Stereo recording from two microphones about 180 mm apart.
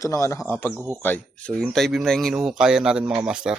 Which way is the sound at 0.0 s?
15° left (ahead or behind).